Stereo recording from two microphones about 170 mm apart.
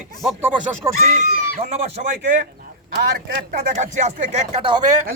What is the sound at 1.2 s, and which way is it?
Speech, 45° right (ahead or behind).